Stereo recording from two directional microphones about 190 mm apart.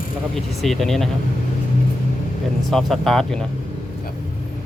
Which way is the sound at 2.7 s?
Centre (ahead or behind).